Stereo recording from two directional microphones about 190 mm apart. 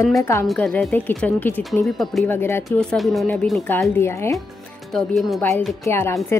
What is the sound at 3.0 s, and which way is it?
A woman's voice, centre (ahead or behind).